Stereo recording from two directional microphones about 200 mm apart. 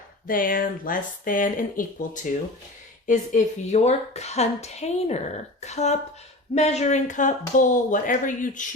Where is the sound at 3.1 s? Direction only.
35° left (ahead or behind).